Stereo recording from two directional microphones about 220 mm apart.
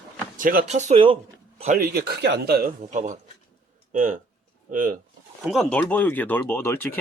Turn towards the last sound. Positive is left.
turn(degrees=10)  # may be behind; listen again after turning